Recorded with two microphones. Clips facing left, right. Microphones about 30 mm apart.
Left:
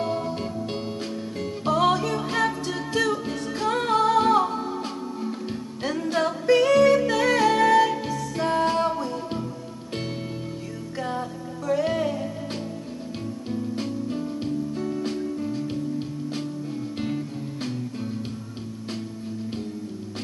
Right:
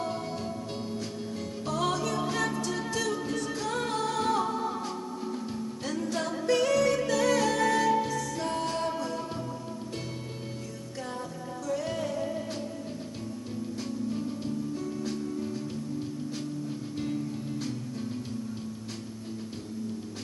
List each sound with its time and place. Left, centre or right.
0.1 s music: left
0.4 s music: left
11.0 s music: left
13.5 s music: left